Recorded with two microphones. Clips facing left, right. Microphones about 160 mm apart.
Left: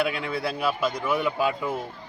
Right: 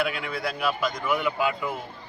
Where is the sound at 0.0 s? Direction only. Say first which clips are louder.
Left 2 dB; 25° left (ahead or behind).